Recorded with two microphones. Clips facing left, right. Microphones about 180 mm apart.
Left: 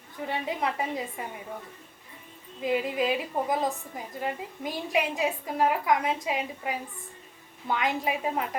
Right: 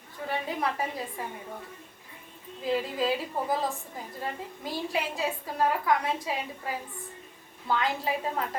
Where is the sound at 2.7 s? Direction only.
15° left (ahead or behind).